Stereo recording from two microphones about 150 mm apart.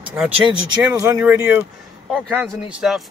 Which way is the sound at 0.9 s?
15° right (ahead or behind).